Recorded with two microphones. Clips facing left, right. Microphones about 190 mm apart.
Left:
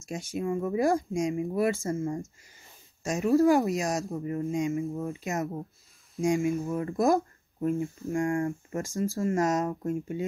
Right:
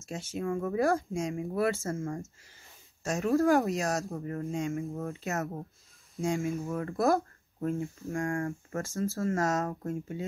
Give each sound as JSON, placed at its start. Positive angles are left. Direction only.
{"t": 0.0, "sound": "speech", "side_deg": 10}